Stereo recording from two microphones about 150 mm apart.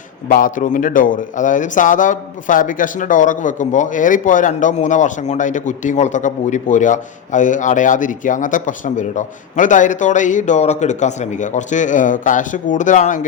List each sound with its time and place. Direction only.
0.3 s speech: 65° left (ahead or behind)